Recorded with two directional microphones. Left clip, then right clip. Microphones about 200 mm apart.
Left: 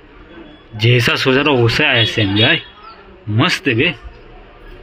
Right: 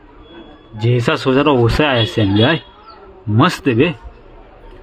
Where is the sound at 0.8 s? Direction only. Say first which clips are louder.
Left 3 dB; 5° right (ahead or behind); by 3.9 s 30° right (ahead or behind).